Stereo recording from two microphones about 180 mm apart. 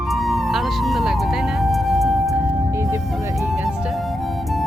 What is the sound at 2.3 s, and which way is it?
Music, 10° right (ahead or behind).